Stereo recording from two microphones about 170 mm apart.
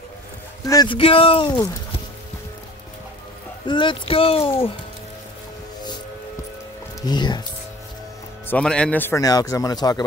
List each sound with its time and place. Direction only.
0.7 s a man's voice: 25° left (ahead or behind)
3.6 s speech: 30° left (ahead or behind)
7.0 s a man's voice: 25° left (ahead or behind)
8.5 s a man's voice: 5° left (ahead or behind); by 10.0 s 25° left (ahead or behind)